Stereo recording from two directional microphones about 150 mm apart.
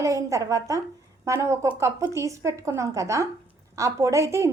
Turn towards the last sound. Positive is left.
turn(degrees=-20)  # may be behind; listen again after turning